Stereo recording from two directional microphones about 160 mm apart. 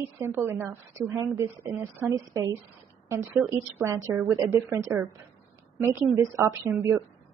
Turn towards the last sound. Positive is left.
turn(degrees=-15)  # may be behind; listen again after turning